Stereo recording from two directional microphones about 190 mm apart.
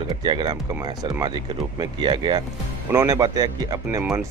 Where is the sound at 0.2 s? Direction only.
25° right (ahead or behind).